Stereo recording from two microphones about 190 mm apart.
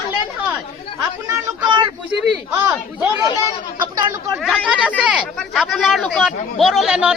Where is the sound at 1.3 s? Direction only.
20° right (ahead or behind).